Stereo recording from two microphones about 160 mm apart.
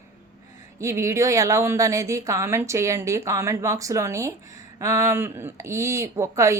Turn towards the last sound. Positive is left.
turn(degrees=-20)  # may be behind; listen again after turning